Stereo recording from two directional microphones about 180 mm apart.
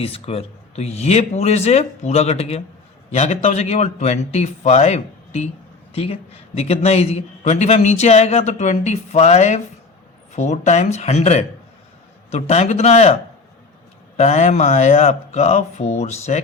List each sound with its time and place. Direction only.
0.0 s a man's voice: 35° left (ahead or behind)
14.2 s a man's voice: 40° left (ahead or behind)